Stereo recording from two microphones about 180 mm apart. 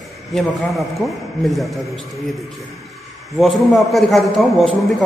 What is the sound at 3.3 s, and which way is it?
A man's voice, centre (ahead or behind).